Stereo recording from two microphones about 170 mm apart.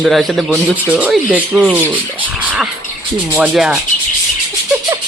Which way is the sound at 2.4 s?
5° right (ahead or behind).